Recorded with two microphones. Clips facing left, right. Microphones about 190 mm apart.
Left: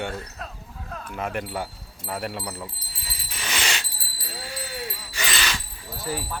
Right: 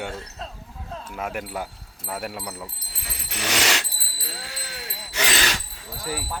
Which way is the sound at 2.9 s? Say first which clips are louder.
Right 9 dB; 75° right (ahead or behind).